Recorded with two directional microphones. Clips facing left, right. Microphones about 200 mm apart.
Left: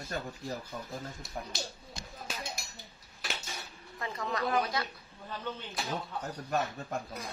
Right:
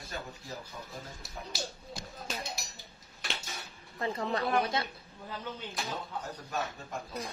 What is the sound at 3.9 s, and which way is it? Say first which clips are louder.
Speech: right 3 dB; 30° right (ahead or behind).